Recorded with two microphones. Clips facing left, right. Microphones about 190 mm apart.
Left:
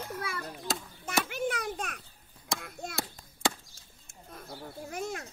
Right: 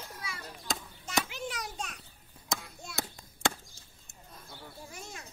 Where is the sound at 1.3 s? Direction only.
55° left (ahead or behind).